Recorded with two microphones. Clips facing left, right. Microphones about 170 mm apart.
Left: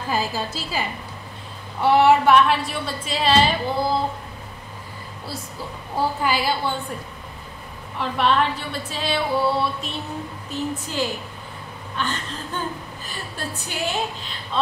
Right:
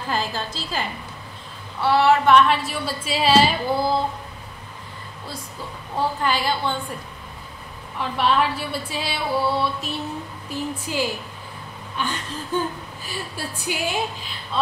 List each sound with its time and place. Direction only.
0.1 s a woman's voice: 10° left (ahead or behind)
2.2 s a woman's voice: 5° left (ahead or behind)
5.9 s a woman's voice: 10° left (ahead or behind)
8.0 s a woman's voice: 5° right (ahead or behind)